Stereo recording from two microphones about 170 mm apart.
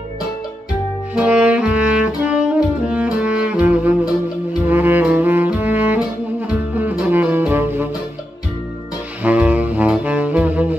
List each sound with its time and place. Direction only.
1.1 s saxophone: 5° right (ahead or behind)
4.6 s music: 10° right (ahead or behind)
9.2 s saxophone: 10° right (ahead or behind)